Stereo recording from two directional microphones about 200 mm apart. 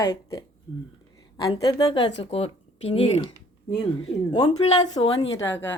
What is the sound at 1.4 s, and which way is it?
Speech, 20° left (ahead or behind).